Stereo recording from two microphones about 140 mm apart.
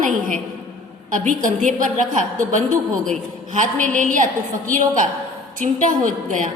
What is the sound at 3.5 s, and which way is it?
A woman's voice, 65° right (ahead or behind).